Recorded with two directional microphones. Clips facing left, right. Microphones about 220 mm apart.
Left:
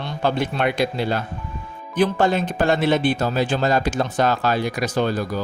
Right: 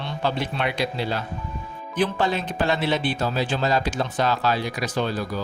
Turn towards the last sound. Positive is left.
turn(degrees=45)  # may be behind; listen again after turning